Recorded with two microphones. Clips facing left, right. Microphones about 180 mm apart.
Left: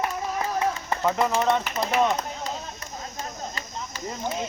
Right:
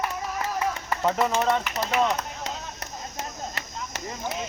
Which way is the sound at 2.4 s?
75° right (ahead or behind).